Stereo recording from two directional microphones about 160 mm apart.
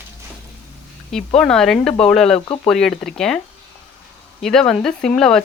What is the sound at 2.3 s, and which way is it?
Speech, 35° left (ahead or behind).